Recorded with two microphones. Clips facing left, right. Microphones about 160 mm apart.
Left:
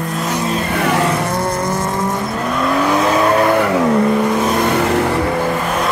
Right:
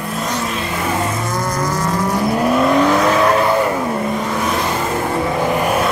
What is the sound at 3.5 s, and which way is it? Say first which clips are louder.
Vehicle: left 4 dB; 75° left (ahead or behind).